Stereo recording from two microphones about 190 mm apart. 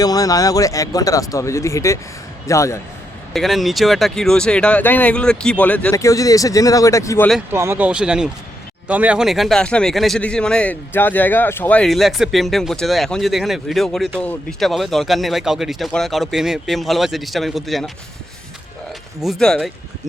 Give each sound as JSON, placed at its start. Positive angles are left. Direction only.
{"t": 0.0, "sound": "speech", "side_deg": 20}
{"t": 3.3, "sound": "a man's voice", "side_deg": 0}
{"t": 7.5, "sound": "a man's voice", "side_deg": -15}
{"t": 19.2, "sound": "a man's voice", "side_deg": 0}